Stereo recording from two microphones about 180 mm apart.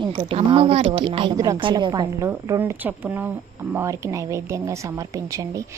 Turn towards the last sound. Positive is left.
turn(degrees=-20)  # may be behind; listen again after turning